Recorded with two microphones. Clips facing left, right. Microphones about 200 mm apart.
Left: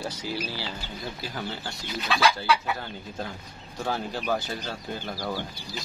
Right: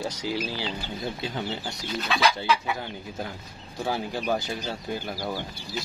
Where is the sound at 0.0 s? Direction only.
15° right (ahead or behind).